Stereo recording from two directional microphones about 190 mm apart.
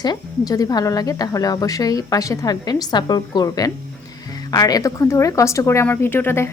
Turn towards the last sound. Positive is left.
turn(degrees=10)  # may be behind; listen again after turning